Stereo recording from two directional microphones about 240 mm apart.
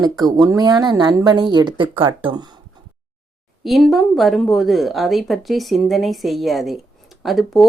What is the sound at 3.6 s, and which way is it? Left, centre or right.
Speech, centre.